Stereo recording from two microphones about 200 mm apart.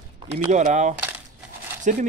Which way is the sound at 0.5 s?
35° right (ahead or behind).